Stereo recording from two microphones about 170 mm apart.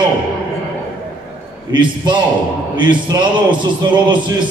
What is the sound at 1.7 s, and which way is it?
A man's voice, 25° right (ahead or behind).